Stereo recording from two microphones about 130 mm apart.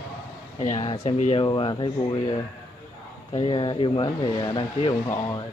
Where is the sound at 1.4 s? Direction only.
35° left (ahead or behind).